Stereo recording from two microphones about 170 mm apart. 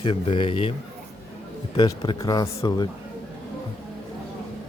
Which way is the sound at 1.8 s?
25° left (ahead or behind).